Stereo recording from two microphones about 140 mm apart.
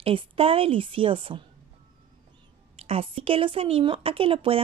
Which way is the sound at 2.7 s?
45° right (ahead or behind).